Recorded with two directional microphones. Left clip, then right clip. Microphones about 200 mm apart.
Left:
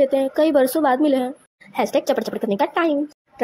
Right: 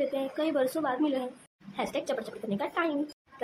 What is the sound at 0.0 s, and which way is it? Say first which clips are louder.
A woman's voice: left 13 dB; 35° left (ahead or behind).